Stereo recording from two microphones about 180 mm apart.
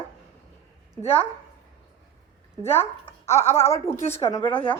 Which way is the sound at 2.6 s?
15° left (ahead or behind).